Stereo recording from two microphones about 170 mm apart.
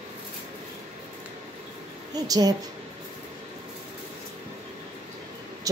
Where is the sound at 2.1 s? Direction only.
20° right (ahead or behind).